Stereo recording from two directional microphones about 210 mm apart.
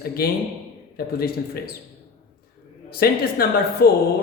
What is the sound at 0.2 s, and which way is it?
Speech, 45° left (ahead or behind).